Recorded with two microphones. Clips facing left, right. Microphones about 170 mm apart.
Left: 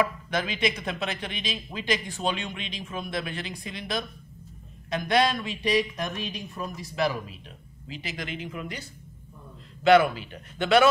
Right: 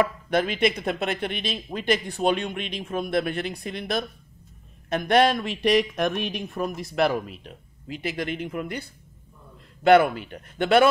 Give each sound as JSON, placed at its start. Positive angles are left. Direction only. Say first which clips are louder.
{"t": 0.3, "sound": "speech", "louder": "right 5 dB", "side_deg": -55}
{"t": 9.8, "sound": "speech", "louder": "right 2 dB", "side_deg": -55}